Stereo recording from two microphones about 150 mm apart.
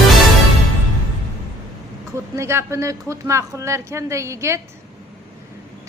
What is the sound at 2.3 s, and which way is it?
A woman's voice, 20° right (ahead or behind).